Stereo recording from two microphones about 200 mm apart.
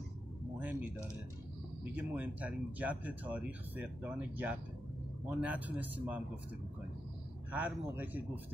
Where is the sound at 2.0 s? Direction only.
10° right (ahead or behind).